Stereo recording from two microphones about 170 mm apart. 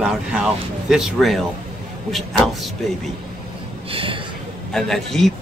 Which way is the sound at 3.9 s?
30° right (ahead or behind).